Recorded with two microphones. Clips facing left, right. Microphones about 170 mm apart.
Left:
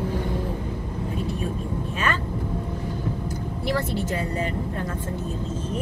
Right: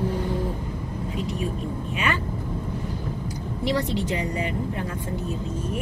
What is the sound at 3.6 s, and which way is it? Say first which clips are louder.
Speech: right 2 dB; 15° right (ahead or behind).